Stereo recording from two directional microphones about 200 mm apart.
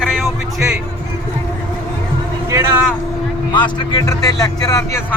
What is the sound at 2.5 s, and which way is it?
Speech, 15° right (ahead or behind).